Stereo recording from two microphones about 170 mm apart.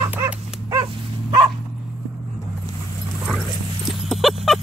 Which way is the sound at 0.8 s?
30° right (ahead or behind).